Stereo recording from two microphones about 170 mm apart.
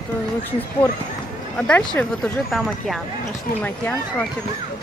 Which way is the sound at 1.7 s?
5° left (ahead or behind).